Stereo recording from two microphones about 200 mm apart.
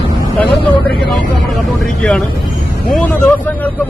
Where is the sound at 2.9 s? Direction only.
5° left (ahead or behind).